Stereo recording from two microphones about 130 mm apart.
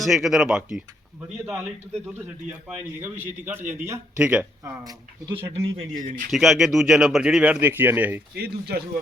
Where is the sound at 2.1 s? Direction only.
15° right (ahead or behind).